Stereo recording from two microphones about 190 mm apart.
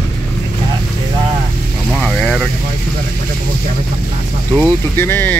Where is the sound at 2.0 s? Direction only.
5° left (ahead or behind).